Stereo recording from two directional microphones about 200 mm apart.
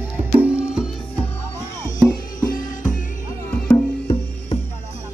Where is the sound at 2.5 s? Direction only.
40° left (ahead or behind).